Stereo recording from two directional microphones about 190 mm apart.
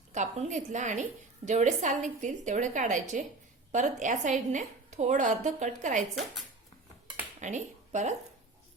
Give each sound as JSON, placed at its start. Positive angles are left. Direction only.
{"t": 0.1, "sound": "a woman's voice", "side_deg": -40}
{"t": 7.3, "sound": "speech", "side_deg": -40}